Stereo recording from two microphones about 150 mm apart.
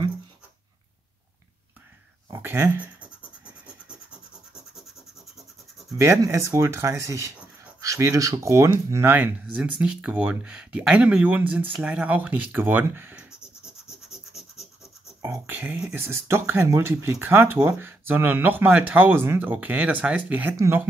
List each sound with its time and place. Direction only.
2.3 s speech: 15° right (ahead or behind)
5.9 s speech: 20° right (ahead or behind)
14.1 s scratch: centre (ahead or behind)
15.2 s speech: 15° right (ahead or behind)